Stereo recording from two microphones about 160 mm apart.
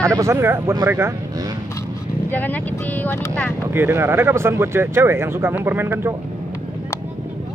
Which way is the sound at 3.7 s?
15° right (ahead or behind).